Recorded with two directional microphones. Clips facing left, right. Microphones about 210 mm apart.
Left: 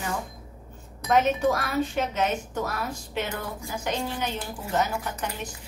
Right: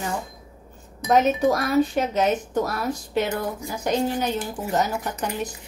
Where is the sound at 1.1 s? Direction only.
40° right (ahead or behind).